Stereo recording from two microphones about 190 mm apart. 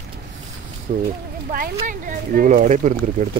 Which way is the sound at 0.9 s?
45° right (ahead or behind).